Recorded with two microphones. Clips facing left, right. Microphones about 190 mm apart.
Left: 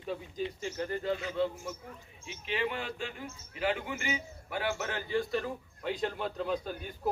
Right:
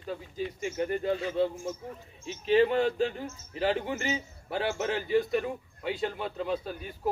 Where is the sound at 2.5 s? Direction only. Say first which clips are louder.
Right 11 dB; 40° right (ahead or behind); by 5.5 s 15° right (ahead or behind).